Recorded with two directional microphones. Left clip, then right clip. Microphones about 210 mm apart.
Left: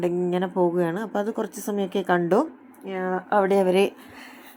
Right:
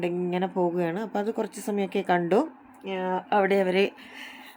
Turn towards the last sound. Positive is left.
turn(degrees=5)  # may be behind; listen again after turning